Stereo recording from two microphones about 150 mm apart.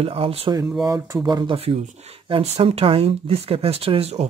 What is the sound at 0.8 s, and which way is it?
Speech, 20° right (ahead or behind).